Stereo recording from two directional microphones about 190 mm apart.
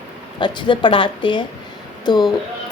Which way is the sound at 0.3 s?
25° left (ahead or behind).